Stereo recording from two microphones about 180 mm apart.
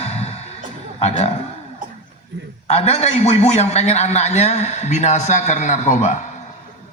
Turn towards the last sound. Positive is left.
turn(degrees=40)  # may be behind; listen again after turning